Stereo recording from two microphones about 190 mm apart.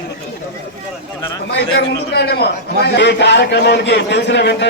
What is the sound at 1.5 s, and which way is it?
A man's voice, 60° left (ahead or behind).